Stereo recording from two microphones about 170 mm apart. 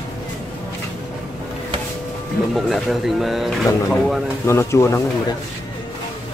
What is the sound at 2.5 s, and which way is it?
Speech, centre (ahead or behind).